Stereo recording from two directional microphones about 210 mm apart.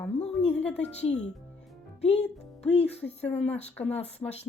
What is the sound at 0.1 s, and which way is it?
Music, 30° left (ahead or behind).